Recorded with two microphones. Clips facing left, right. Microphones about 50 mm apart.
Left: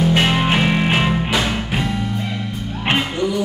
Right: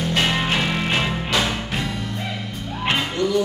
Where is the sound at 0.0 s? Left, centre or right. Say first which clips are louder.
Left 5 dB; centre.